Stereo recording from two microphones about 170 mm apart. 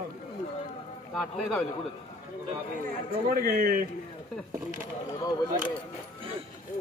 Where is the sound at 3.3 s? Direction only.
60° right (ahead or behind).